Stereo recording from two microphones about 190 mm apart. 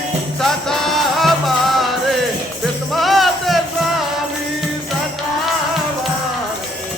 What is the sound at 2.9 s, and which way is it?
Music, centre (ahead or behind).